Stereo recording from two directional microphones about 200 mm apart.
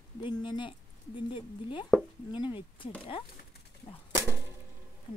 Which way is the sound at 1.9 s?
5° left (ahead or behind).